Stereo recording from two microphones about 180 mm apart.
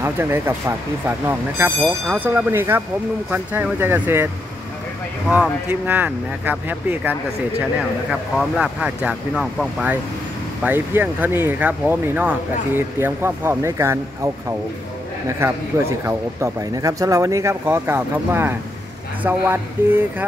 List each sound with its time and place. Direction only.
0.0 s speech: 15° right (ahead or behind)
5.3 s speech: 10° right (ahead or behind)